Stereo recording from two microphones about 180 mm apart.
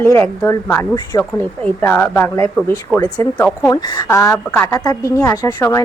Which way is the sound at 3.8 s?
25° left (ahead or behind).